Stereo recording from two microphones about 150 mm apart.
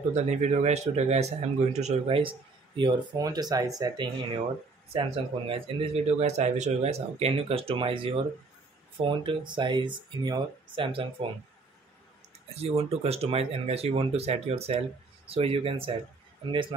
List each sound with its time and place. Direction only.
0.1 s speech: 50° right (ahead or behind)
12.5 s speech: 45° right (ahead or behind)